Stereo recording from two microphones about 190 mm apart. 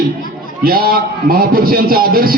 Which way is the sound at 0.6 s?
50° right (ahead or behind).